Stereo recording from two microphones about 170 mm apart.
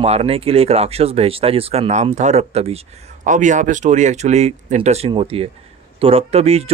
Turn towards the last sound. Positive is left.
turn(degrees=-40)  # may be behind; listen again after turning